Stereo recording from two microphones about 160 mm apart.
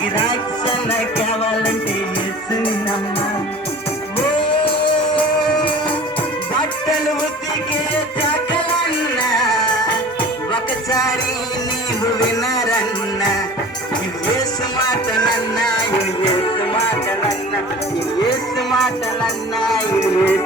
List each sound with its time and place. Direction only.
14.8 s music: 25° left (ahead or behind)
18.7 s music: centre (ahead or behind)
19.7 s music: 15° left (ahead or behind)